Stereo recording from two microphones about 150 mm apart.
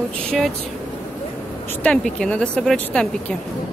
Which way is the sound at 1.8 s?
5° left (ahead or behind).